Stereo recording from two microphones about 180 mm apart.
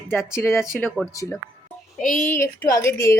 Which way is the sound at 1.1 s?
20° left (ahead or behind).